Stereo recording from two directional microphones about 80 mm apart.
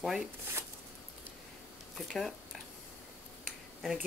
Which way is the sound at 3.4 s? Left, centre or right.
Centre.